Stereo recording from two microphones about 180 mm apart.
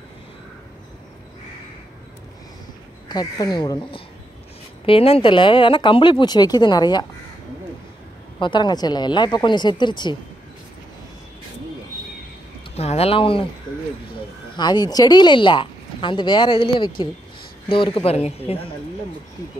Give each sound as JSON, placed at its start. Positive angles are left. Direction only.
{"t": 3.1, "sound": "speech", "side_deg": 20}
{"t": 8.4, "sound": "speech", "side_deg": 25}
{"t": 12.7, "sound": "speech", "side_deg": 35}
{"t": 14.6, "sound": "speech", "side_deg": 25}